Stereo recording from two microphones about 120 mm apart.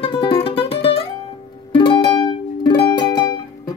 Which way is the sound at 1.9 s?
40° left (ahead or behind).